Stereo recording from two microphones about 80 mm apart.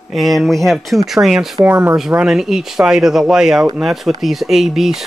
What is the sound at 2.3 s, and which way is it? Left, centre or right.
Speech, centre.